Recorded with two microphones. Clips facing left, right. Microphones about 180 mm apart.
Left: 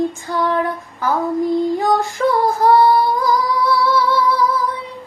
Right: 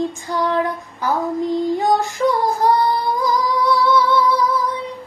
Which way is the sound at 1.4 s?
20° right (ahead or behind).